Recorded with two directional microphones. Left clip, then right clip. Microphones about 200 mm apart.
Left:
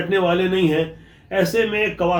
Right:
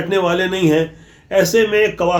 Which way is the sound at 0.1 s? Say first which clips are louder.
Right 2 dB; 50° right (ahead or behind).